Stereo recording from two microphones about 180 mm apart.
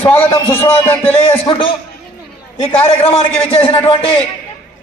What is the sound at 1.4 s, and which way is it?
Speech, 30° left (ahead or behind).